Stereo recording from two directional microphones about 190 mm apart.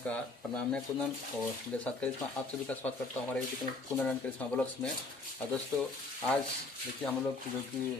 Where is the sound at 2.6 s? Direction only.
5° left (ahead or behind).